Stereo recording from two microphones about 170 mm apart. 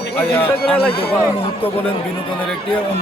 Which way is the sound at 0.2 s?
10° left (ahead or behind).